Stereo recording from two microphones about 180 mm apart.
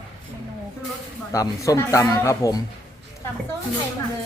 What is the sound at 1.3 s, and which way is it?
Speech, 20° left (ahead or behind).